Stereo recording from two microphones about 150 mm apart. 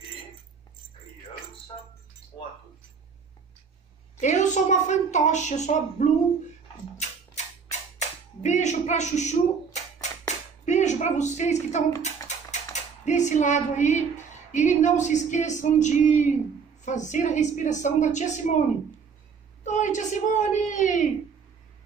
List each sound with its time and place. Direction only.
4.2 s a woman's voice: 50° left (ahead or behind)
8.4 s a sound: 50° left (ahead or behind)
12.7 s a woman's voice: 55° left (ahead or behind)
19.6 s a woman's voice: 55° left (ahead or behind)